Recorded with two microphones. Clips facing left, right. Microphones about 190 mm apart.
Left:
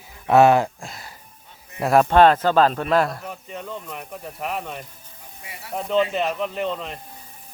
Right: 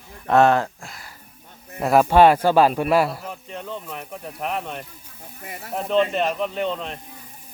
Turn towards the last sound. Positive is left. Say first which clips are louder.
# right 1 dB
turn(degrees=0)  # may be behind; listen again after turning